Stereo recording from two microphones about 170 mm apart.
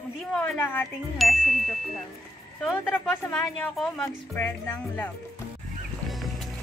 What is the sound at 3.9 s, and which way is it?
Speech, 15° left (ahead or behind).